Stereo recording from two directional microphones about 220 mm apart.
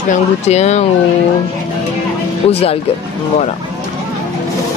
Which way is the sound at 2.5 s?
25° left (ahead or behind).